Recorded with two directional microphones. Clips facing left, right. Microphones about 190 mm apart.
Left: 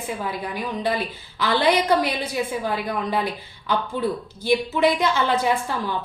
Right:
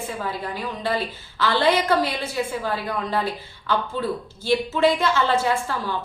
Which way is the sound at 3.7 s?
15° left (ahead or behind).